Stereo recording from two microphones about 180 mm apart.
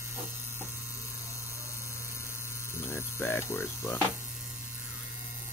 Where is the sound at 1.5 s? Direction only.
15° left (ahead or behind).